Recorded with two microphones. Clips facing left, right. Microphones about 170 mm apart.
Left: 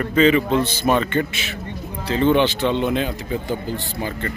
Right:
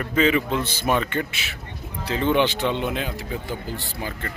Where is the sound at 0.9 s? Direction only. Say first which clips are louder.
Left 4 dB; 5° right (ahead or behind).